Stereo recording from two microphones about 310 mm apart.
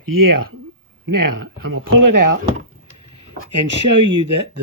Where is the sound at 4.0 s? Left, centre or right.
Right.